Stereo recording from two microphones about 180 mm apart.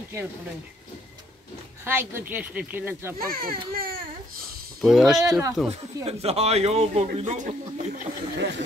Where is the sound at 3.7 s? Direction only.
55° right (ahead or behind).